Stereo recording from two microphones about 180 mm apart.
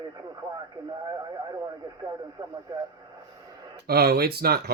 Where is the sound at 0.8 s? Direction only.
20° right (ahead or behind).